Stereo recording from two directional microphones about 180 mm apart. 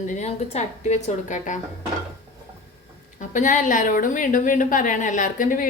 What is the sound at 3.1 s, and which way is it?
A woman's voice, 45° left (ahead or behind).